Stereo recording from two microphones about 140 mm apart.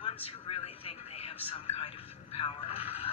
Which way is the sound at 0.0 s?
40° left (ahead or behind).